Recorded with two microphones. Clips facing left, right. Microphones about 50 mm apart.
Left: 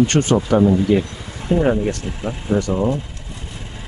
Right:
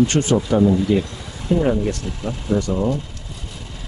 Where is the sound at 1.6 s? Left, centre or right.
Left.